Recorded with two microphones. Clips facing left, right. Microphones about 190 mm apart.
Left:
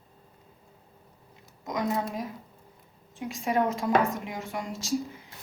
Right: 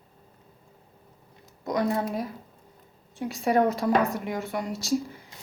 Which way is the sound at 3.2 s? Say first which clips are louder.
Right 4 dB; 35° right (ahead or behind).